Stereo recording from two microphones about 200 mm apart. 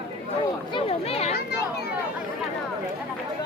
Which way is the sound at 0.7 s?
30° left (ahead or behind).